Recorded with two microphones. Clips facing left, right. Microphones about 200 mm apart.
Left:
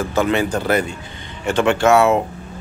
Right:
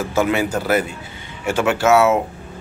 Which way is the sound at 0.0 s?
10° right (ahead or behind).